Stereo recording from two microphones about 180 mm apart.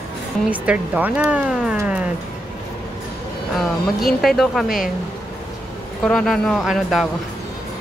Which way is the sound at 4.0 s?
Centre (ahead or behind).